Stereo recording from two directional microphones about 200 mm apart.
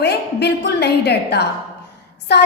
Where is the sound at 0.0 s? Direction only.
55° left (ahead or behind).